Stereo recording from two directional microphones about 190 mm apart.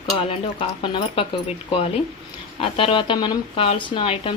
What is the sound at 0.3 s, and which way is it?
A woman's voice, 30° left (ahead or behind).